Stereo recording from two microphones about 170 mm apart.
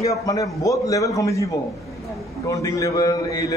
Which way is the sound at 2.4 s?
20° left (ahead or behind).